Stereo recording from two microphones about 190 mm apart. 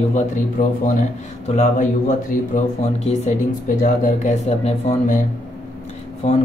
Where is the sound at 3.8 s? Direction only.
40° left (ahead or behind).